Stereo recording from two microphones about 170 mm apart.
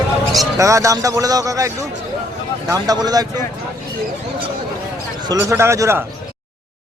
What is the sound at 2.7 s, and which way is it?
Speech, 20° right (ahead or behind).